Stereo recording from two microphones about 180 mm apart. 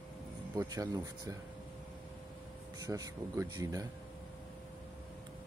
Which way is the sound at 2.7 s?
20° right (ahead or behind).